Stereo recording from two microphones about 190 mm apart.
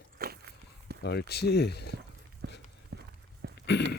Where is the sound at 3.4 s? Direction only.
60° right (ahead or behind).